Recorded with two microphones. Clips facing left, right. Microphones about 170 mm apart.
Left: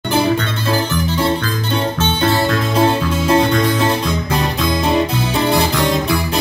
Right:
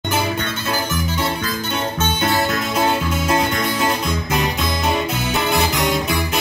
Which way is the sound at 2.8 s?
30° left (ahead or behind).